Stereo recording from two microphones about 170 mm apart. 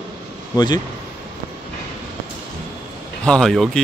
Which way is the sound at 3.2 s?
5° left (ahead or behind).